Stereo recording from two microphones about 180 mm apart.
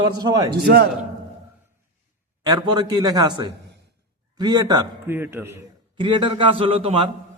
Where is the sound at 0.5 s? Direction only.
60° right (ahead or behind).